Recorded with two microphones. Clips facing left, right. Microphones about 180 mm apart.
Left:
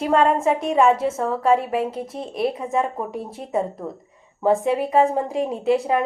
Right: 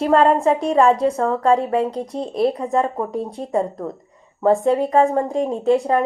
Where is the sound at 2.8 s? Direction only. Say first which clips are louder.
Right 3 dB; 30° right (ahead or behind).